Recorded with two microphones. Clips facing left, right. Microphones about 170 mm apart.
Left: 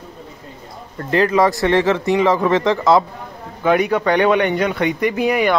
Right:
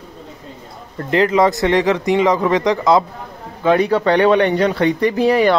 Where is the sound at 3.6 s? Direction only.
30° right (ahead or behind).